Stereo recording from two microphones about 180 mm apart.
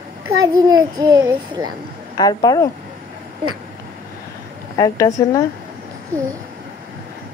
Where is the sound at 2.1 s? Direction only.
20° left (ahead or behind).